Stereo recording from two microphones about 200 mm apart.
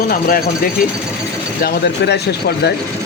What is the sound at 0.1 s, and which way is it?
Speech, 45° left (ahead or behind).